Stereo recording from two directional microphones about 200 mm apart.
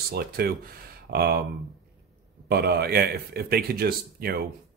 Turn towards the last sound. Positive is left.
turn(degrees=-50)  # may be behind; listen again after turning